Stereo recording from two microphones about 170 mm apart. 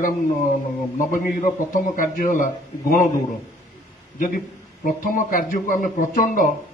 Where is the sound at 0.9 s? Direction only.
50° left (ahead or behind).